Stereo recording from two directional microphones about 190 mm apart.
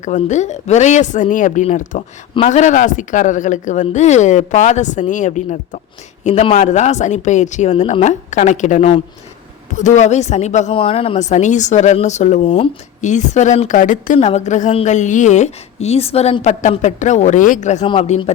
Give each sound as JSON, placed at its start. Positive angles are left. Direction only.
{"t": 0.0, "sound": "a woman's voice", "side_deg": 40}